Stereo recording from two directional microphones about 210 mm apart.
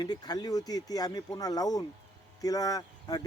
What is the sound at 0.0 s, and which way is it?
Speech, 20° left (ahead or behind).